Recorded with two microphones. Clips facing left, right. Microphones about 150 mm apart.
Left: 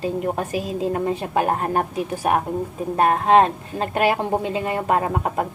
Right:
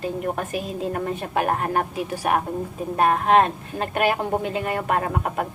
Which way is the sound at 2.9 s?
30° left (ahead or behind).